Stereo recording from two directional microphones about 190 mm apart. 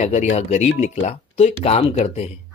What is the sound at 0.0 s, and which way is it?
Speech, 35° left (ahead or behind).